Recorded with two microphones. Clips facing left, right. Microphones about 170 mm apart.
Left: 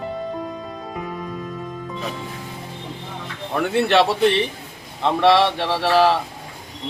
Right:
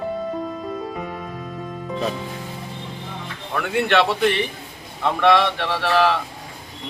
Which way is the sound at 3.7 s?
35° left (ahead or behind).